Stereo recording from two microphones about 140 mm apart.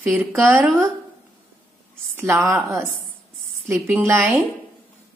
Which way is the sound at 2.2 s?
20° right (ahead or behind).